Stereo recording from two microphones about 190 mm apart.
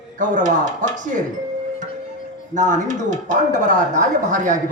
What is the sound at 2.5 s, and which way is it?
Speech, 40° right (ahead or behind).